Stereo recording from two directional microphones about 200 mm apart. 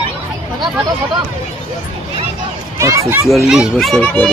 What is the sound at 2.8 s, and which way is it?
Speech, 15° right (ahead or behind).